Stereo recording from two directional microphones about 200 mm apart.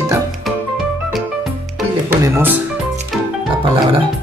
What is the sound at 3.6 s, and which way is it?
Music, 25° right (ahead or behind).